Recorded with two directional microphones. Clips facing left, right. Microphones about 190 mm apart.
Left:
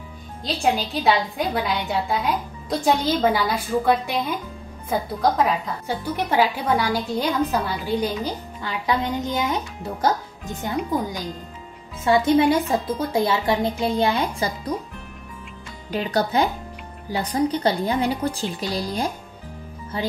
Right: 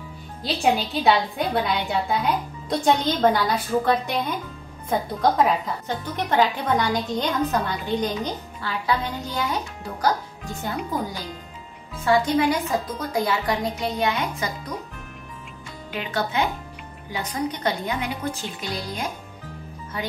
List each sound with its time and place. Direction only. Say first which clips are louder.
0.4 s a woman's voice: even; 5° right (ahead or behind)
8.5 s a woman's voice: left 1 dB; 20° left (ahead or behind)
15.9 s a woman's voice: left 5 dB; 40° left (ahead or behind)